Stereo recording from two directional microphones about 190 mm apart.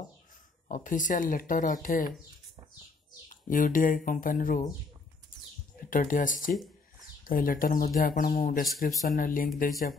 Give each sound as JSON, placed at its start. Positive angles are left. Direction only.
{"t": 0.7, "sound": "speech", "side_deg": 40}
{"t": 3.4, "sound": "speech", "side_deg": 45}
{"t": 5.9, "sound": "speech", "side_deg": 45}